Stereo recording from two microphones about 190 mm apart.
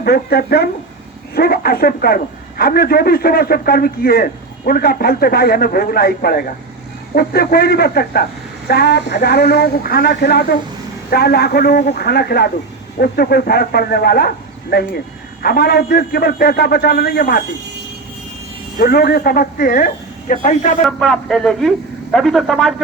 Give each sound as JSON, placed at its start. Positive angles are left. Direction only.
{"t": 0.0, "sound": "a man's voice", "side_deg": 55}
{"t": 18.8, "sound": "a man's voice", "side_deg": 55}
{"t": 20.8, "sound": "speech", "side_deg": 5}